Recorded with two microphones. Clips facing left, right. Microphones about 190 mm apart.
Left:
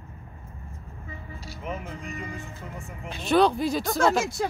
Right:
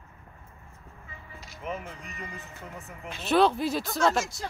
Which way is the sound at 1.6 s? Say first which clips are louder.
Left 1 dB; centre (ahead or behind).